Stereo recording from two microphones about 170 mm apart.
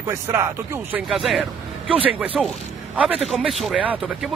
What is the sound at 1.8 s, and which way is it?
Speech, 30° right (ahead or behind).